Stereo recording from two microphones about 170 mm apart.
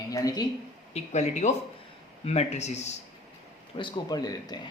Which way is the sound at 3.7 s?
25° left (ahead or behind).